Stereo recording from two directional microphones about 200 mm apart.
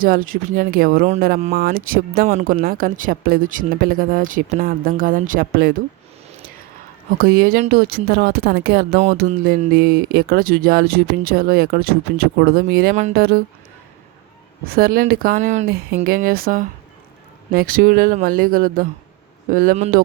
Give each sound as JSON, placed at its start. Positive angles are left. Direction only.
{"t": 0.0, "sound": "speech", "side_deg": -45}
{"t": 7.2, "sound": "speech", "side_deg": -45}
{"t": 14.6, "sound": "speech", "side_deg": -45}